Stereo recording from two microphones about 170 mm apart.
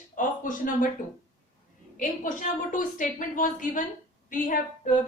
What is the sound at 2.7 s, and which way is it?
A woman's voice, 50° left (ahead or behind).